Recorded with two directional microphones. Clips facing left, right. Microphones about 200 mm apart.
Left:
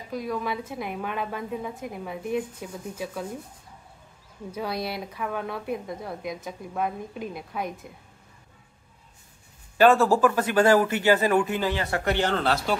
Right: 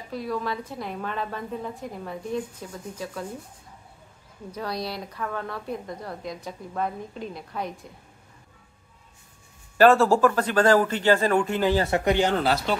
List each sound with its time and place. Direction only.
0.1 s a woman's voice: centre (ahead or behind)
2.2 s speech: 15° left (ahead or behind)
2.7 s a woman's voice: 5° left (ahead or behind)
4.9 s a woman's voice: 5° left (ahead or behind)
9.8 s speech: centre (ahead or behind)
11.7 s speech: 25° right (ahead or behind); by 12.5 s 10° right (ahead or behind)